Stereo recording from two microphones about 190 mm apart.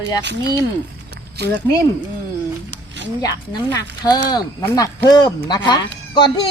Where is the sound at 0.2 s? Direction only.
65° right (ahead or behind).